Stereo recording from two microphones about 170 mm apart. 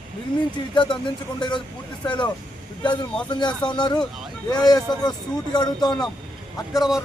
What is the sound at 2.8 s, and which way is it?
Speech, 30° left (ahead or behind).